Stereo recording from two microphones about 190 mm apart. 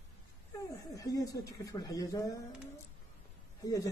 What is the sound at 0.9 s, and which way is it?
A man's voice, 15° left (ahead or behind).